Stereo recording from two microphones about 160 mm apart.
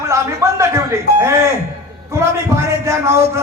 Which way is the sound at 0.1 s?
20° right (ahead or behind).